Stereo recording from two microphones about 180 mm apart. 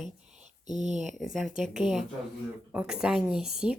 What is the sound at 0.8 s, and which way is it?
Speech, 40° right (ahead or behind).